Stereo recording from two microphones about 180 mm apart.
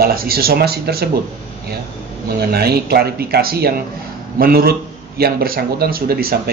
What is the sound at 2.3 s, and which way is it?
A man's voice, 60° right (ahead or behind).